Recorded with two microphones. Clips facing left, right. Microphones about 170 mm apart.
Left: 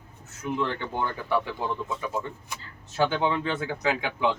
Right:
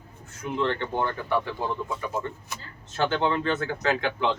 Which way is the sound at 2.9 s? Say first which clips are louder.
Even; 10° left (ahead or behind).